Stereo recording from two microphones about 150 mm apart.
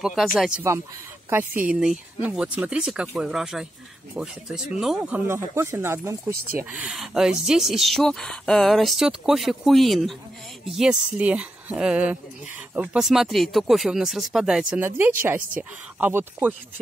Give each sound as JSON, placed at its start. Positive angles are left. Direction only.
{"t": 0.0, "sound": "speech", "side_deg": 0}
{"t": 1.3, "sound": "speech", "side_deg": -15}
{"t": 6.7, "sound": "speech", "side_deg": -5}